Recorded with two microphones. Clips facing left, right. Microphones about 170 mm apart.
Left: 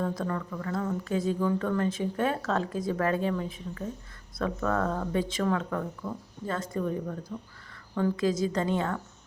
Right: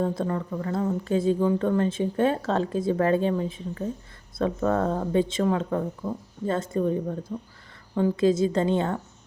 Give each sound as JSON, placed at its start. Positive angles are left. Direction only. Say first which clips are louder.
{"t": 0.0, "sound": "speech", "louder": "right 4 dB", "side_deg": -30}